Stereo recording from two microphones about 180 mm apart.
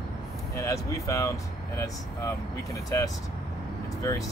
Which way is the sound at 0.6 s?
15° left (ahead or behind).